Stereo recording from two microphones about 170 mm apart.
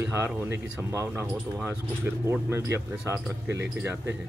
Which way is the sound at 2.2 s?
15° right (ahead or behind).